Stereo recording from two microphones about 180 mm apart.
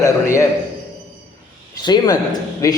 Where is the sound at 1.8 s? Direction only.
25° left (ahead or behind).